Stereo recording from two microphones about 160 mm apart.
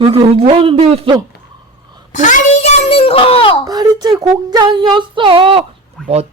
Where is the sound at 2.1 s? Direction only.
50° left (ahead or behind).